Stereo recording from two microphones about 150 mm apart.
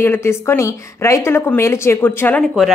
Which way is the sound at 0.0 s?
15° left (ahead or behind).